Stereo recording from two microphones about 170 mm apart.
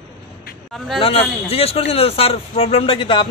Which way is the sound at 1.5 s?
35° left (ahead or behind).